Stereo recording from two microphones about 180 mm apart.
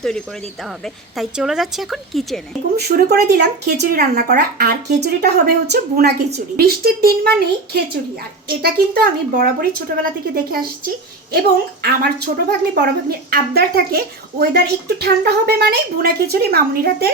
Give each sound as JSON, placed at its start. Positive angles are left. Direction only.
{"t": 1.1, "sound": "a woman's voice", "side_deg": 0}
{"t": 2.7, "sound": "a woman's voice", "side_deg": -65}